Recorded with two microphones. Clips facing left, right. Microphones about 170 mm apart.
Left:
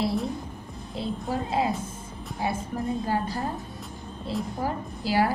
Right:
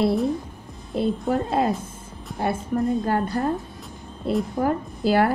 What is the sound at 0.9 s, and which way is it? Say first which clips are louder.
A woman's voice: right 7 dB; 60° right (ahead or behind).